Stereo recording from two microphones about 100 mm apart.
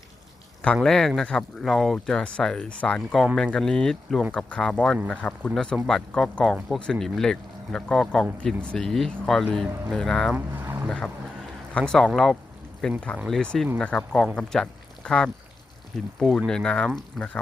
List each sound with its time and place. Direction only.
0.6 s speech: 10° left (ahead or behind)
10.3 s speech: 20° right (ahead or behind)
10.8 s speech: 10° left (ahead or behind)